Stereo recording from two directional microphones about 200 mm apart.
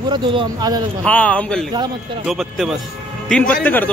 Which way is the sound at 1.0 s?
5° left (ahead or behind).